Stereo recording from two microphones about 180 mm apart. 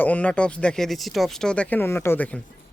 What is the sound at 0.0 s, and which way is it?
Speech, 10° left (ahead or behind).